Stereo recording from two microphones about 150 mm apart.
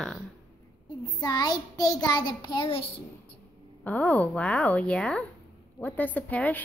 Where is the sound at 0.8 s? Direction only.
25° left (ahead or behind).